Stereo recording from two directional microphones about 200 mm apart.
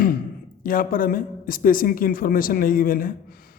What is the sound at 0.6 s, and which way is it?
Speech, 45° left (ahead or behind).